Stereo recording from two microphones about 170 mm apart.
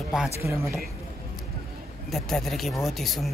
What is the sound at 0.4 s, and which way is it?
Speech, 15° right (ahead or behind).